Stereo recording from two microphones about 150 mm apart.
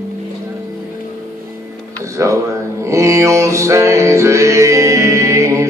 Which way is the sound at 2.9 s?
20° right (ahead or behind).